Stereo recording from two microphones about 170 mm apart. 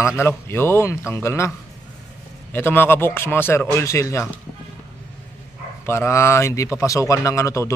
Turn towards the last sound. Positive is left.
turn(degrees=20)  # may be behind; listen again after turning